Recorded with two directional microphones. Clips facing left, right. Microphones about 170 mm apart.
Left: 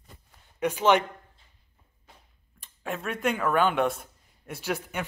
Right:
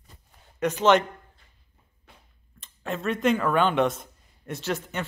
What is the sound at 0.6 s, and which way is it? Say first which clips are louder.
Speech: right 2 dB; 10° left (ahead or behind).